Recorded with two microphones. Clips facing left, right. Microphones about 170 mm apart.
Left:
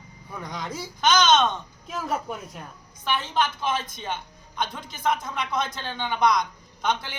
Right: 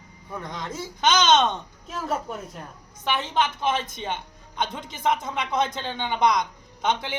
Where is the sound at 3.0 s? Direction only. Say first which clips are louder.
Right 1 dB; 20° right (ahead or behind).